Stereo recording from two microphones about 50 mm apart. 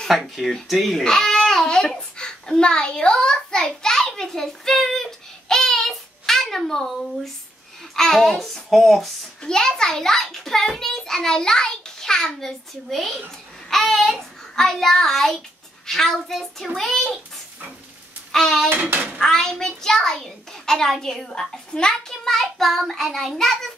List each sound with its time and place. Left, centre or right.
0.1 s a child's voice: centre
5.5 s a sound: centre
7.9 s a child's voice: centre
9.4 s a child's voice: centre
13.7 s a sound: centre
14.1 s a child's voice: centre
18.3 s speech: centre
18.7 s a child's voice: right
19.1 s a child's voice: centre